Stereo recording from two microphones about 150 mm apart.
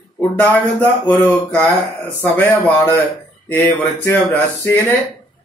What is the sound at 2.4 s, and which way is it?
Speech, 10° left (ahead or behind).